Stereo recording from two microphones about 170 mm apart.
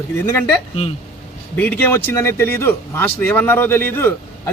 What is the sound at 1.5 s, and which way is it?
Speech, 10° left (ahead or behind).